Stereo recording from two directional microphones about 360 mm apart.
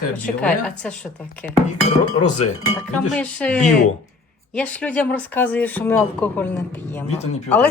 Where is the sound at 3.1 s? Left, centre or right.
Centre.